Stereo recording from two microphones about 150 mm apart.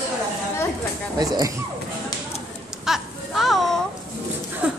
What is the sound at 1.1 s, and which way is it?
Speech, 25° right (ahead or behind).